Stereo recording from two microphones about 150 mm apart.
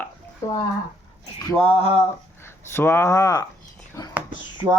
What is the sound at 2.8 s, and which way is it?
Speech, 15° left (ahead or behind).